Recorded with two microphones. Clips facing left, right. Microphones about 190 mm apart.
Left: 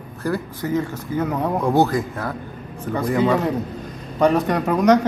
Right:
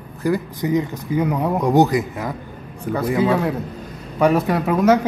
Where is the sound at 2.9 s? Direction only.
Centre (ahead or behind).